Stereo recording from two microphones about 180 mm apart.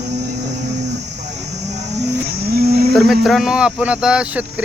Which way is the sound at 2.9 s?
Centre (ahead or behind).